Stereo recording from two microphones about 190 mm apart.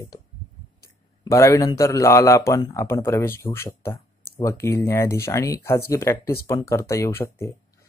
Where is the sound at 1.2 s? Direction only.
15° left (ahead or behind).